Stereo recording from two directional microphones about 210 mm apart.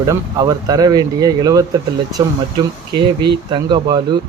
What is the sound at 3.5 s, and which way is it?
Speech, 20° right (ahead or behind).